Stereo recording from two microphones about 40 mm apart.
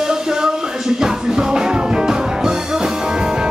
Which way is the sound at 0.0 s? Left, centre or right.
Centre.